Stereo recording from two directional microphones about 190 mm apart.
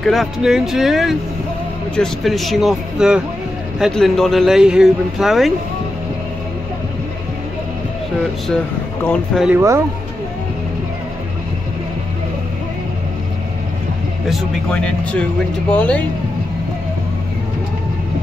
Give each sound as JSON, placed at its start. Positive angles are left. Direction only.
{"t": 0.0, "sound": "speech", "side_deg": 0}
{"t": 9.0, "sound": "speech", "side_deg": 5}
{"t": 9.5, "sound": "speech", "side_deg": -15}
{"t": 14.3, "sound": "speech", "side_deg": 5}